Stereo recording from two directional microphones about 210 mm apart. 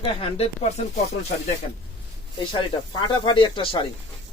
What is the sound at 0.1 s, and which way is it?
Speech, 25° left (ahead or behind).